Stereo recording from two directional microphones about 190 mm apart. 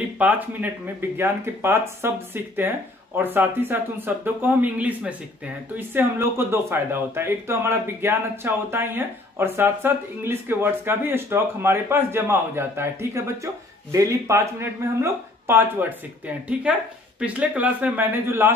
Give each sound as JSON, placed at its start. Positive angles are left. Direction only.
{"t": 0.2, "sound": "speech", "side_deg": -10}